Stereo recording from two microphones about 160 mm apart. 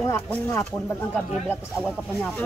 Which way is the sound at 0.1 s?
15° left (ahead or behind).